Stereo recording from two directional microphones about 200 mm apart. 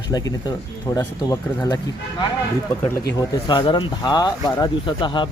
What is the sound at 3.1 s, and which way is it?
Speech, 20° left (ahead or behind).